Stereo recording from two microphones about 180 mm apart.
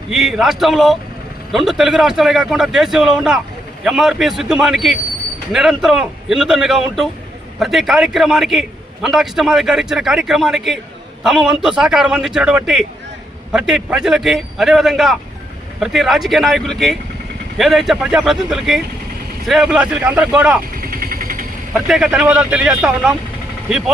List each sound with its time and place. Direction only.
0.1 s a man's voice: centre (ahead or behind)
20.8 s vehicle: 55° right (ahead or behind)
21.8 s a man's voice: centre (ahead or behind)